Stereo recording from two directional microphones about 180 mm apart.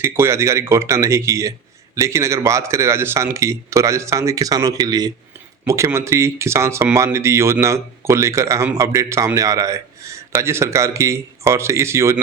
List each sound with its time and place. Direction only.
0.0 s speech: 15° right (ahead or behind)